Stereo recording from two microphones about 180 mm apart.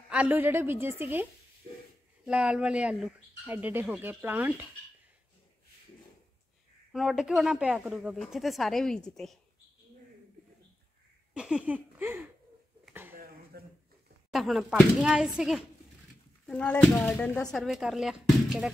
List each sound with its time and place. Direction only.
0.1 s speech: 10° right (ahead or behind)
2.2 s speech: 5° right (ahead or behind)
6.9 s speech: centre (ahead or behind)
11.3 s speech: 5° right (ahead or behind)
13.5 s a sound: 60° right (ahead or behind)
14.3 s speech: centre (ahead or behind)
16.4 s speech: 5° left (ahead or behind)